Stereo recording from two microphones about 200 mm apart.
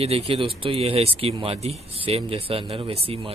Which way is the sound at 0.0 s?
30° right (ahead or behind).